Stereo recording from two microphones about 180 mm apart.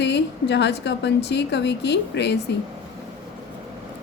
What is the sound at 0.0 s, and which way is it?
A woman's voice, 75° left (ahead or behind).